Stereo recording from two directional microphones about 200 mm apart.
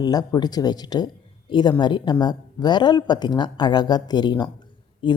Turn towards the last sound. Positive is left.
turn(degrees=25)  # may be behind; listen again after turning